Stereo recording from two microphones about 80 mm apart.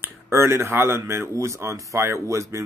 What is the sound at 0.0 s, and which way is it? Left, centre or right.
Speech, right.